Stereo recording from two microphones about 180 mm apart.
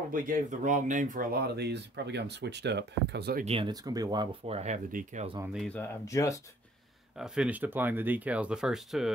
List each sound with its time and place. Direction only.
0.1 s speech: 45° right (ahead or behind); by 3.4 s 65° right (ahead or behind)
3.4 s speech: 30° right (ahead or behind)
4.5 s speech: 35° right (ahead or behind)
5.5 s speech: 5° left (ahead or behind)
6.0 s speech: 15° left (ahead or behind)
7.2 s speech: 5° right (ahead or behind)